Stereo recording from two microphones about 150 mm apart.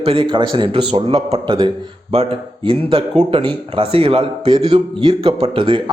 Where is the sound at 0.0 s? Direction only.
35° right (ahead or behind).